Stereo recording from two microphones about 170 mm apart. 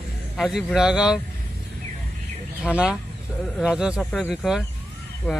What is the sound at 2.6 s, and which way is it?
Speech, 5° right (ahead or behind).